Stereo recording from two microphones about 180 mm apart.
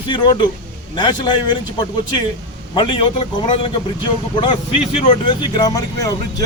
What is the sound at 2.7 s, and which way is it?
Speech, 30° left (ahead or behind).